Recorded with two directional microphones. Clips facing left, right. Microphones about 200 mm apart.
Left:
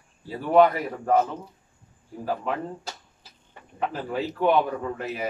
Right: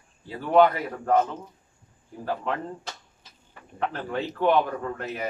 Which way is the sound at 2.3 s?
5° left (ahead or behind).